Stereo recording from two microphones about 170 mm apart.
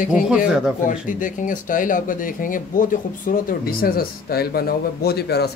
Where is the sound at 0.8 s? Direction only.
50° left (ahead or behind); by 5.5 s 70° left (ahead or behind).